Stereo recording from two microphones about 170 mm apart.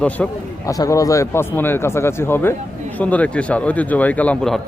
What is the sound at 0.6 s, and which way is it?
Speech, 20° left (ahead or behind).